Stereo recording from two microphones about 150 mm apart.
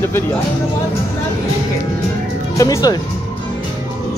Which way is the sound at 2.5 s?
25° left (ahead or behind).